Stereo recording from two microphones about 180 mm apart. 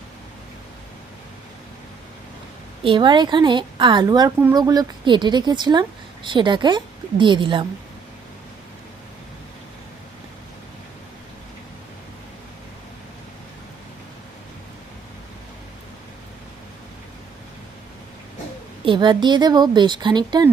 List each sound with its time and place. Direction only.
2.8 s speech: 25° right (ahead or behind)
18.9 s speech: 25° right (ahead or behind)